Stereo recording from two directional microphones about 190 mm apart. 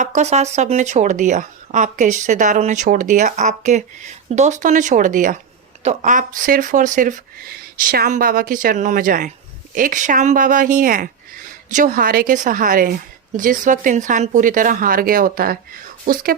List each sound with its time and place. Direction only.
0.0 s a woman's voice: 40° right (ahead or behind)